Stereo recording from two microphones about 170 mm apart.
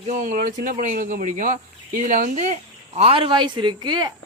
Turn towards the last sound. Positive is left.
turn(degrees=-25)  # may be behind; listen again after turning